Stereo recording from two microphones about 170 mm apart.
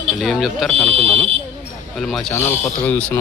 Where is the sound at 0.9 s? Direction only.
35° right (ahead or behind).